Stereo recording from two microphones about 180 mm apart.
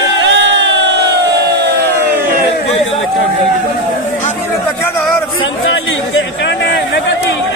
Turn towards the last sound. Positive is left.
turn(degrees=70)  # may be behind; listen again after turning